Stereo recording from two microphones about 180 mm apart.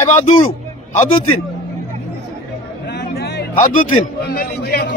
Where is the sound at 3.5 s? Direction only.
45° left (ahead or behind).